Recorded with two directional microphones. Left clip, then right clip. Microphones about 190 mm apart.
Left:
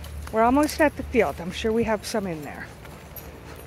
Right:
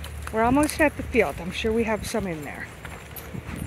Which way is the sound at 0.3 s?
5° left (ahead or behind).